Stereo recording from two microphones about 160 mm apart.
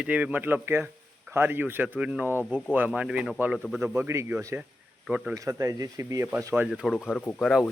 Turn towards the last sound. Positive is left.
turn(degrees=5)  # may be behind; listen again after turning